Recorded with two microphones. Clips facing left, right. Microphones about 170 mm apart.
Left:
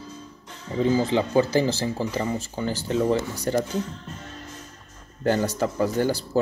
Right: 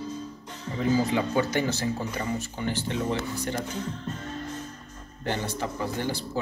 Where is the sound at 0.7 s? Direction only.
30° left (ahead or behind).